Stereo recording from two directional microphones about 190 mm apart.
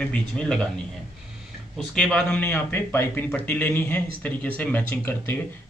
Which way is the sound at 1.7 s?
5° left (ahead or behind).